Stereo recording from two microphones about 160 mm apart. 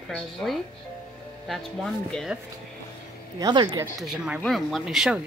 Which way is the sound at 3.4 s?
30° right (ahead or behind).